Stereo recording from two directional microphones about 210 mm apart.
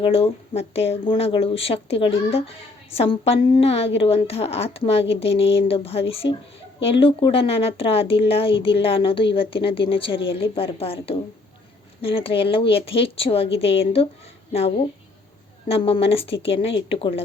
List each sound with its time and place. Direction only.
0.0 s a woman's voice: 30° left (ahead or behind)
15.7 s a woman's voice: 25° left (ahead or behind)